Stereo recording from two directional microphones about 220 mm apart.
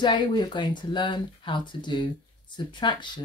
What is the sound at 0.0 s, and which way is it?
Speech, 20° left (ahead or behind).